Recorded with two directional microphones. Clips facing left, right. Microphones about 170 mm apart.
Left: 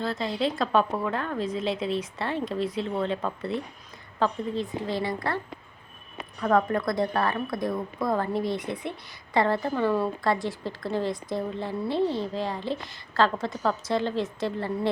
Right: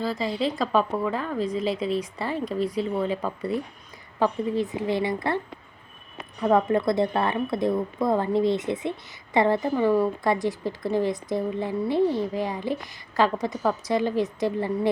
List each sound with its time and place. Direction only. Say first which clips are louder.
0.0 s a woman's voice: right 1 dB; centre (ahead or behind); by 5.4 s 20° right (ahead or behind)
6.4 s a woman's voice: right 3 dB; 20° right (ahead or behind)